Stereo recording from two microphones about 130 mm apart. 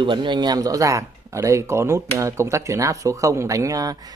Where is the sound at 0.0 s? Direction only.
35° right (ahead or behind).